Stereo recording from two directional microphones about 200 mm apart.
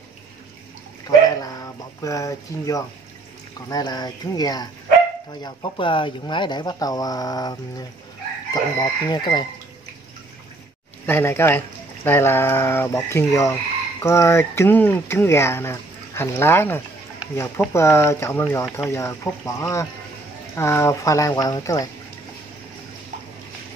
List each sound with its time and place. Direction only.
1.0 s a sound: 20° left (ahead or behind)
3.6 s speech: 20° left (ahead or behind)
8.7 s speech: 20° left (ahead or behind)
11.1 s speech: 10° left (ahead or behind)